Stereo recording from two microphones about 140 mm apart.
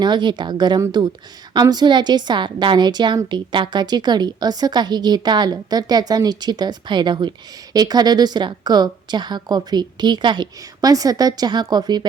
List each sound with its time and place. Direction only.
0.0 s a woman's voice: 35° right (ahead or behind)